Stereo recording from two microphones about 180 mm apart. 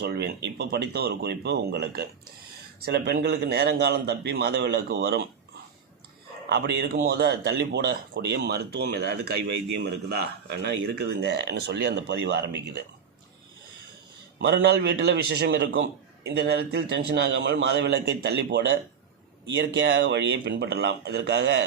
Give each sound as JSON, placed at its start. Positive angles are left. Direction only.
{"t": 0.0, "sound": "a man's voice", "side_deg": -60}
{"t": 6.5, "sound": "speech", "side_deg": -70}
{"t": 14.3, "sound": "speech", "side_deg": -65}